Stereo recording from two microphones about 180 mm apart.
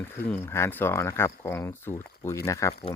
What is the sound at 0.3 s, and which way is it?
Speech, 15° left (ahead or behind).